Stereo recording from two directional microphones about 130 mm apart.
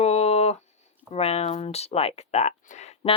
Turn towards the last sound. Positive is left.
turn(degrees=60)  # may be behind; listen again after turning